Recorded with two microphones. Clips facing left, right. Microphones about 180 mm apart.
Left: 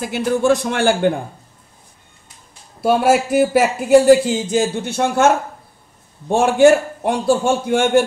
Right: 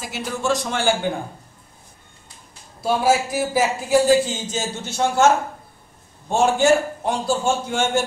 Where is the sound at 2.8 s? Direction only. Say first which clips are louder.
Left 4 dB; 60° left (ahead or behind).